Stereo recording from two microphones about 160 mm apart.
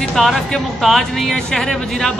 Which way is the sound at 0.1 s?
Centre (ahead or behind).